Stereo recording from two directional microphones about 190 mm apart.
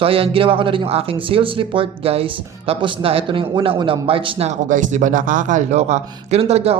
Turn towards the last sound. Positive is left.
turn(degrees=-35)  # may be behind; listen again after turning